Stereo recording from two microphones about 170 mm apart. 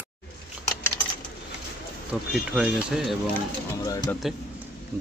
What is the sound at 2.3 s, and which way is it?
Speech, 5° right (ahead or behind).